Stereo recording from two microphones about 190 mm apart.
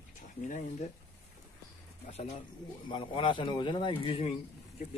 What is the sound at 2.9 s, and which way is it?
Speech, 25° left (ahead or behind).